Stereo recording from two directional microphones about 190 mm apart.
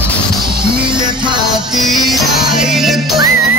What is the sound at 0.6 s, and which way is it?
Music, 25° right (ahead or behind).